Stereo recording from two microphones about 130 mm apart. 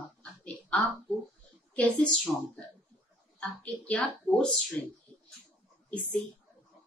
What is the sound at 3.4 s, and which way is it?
A woman's voice, 10° left (ahead or behind).